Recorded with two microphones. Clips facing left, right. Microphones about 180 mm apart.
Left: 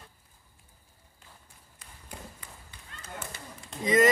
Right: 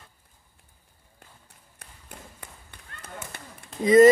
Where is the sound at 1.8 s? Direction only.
65° right (ahead or behind).